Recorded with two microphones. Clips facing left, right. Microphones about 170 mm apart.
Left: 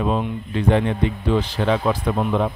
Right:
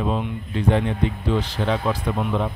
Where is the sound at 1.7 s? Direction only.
55° left (ahead or behind).